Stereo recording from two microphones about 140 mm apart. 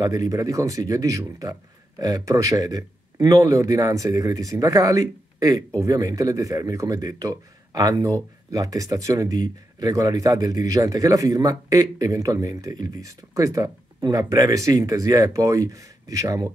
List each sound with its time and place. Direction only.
0.0 s a man's voice: 25° right (ahead or behind)